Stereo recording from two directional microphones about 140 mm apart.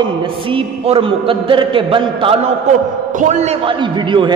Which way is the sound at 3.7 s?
35° right (ahead or behind).